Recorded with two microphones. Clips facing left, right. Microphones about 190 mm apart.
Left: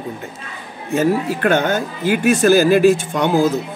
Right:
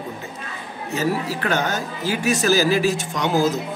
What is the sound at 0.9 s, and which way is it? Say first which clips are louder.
Speech: left 6 dB; 55° left (ahead or behind).